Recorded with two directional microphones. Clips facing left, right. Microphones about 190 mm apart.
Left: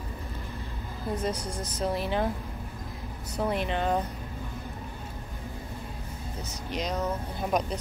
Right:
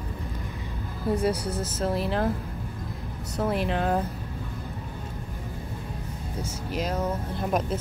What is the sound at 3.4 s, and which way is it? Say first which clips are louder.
Speech: right 2 dB; centre (ahead or behind).